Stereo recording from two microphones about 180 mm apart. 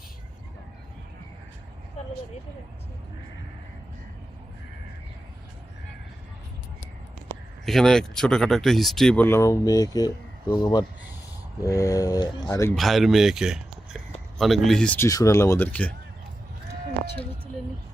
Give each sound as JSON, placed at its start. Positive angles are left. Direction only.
{"t": 7.6, "sound": "speech", "side_deg": 0}
{"t": 12.7, "sound": "speech", "side_deg": 0}